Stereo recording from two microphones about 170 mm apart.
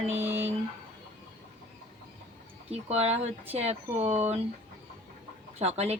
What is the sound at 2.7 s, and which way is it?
Speech, 40° right (ahead or behind).